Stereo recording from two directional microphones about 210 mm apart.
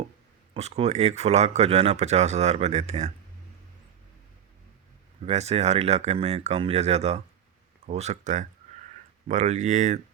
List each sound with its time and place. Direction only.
0.5 s speech: 30° right (ahead or behind)
5.2 s speech: 30° right (ahead or behind)